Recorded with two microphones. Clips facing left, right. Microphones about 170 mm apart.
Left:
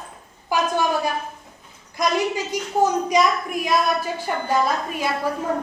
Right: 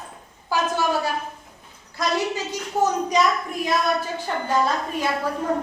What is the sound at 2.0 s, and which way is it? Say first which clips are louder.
A woman's voice: left 2 dB; 15° left (ahead or behind).